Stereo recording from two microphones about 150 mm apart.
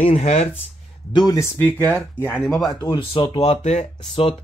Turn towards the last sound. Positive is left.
turn(degrees=45)  # may be behind; listen again after turning